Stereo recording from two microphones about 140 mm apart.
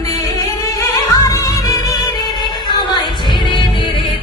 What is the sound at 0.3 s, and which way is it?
Music, 25° left (ahead or behind).